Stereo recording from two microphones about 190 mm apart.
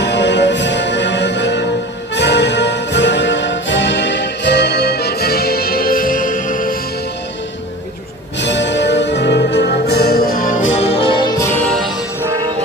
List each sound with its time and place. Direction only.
0.0 s music: 65° left (ahead or behind); by 6.7 s 45° left (ahead or behind)
8.4 s music: 70° left (ahead or behind); by 11.5 s 20° left (ahead or behind)